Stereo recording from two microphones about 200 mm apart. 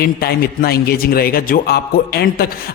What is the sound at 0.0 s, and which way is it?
A man's voice, 50° left (ahead or behind).